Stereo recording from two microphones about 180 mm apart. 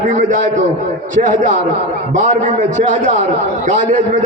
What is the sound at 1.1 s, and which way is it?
Speech, 45° right (ahead or behind).